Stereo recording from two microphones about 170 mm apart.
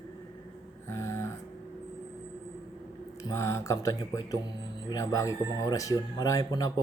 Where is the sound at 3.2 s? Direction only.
20° left (ahead or behind).